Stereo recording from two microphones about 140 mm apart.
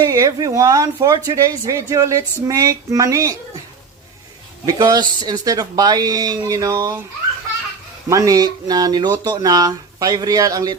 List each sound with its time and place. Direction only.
0.1 s speech: 25° right (ahead or behind)
4.6 s speech: 25° right (ahead or behind)
8.1 s speech: 25° right (ahead or behind)